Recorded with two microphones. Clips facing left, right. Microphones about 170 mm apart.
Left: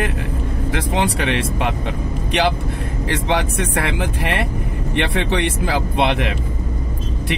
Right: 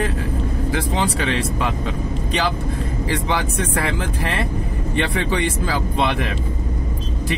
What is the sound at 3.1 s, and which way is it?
Speech, 80° left.